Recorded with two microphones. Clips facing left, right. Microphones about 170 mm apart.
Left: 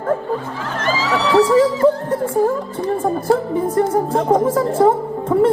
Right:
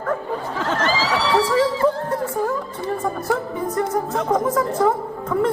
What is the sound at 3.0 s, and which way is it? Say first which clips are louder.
A woman's voice: left 7 dB; 30° left (ahead or behind).